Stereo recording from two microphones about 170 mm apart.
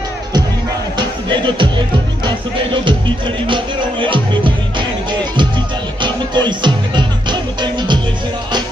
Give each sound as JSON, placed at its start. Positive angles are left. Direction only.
{"t": 0.9, "sound": "music", "side_deg": -30}
{"t": 3.4, "sound": "music", "side_deg": -30}
{"t": 6.0, "sound": "music", "side_deg": -25}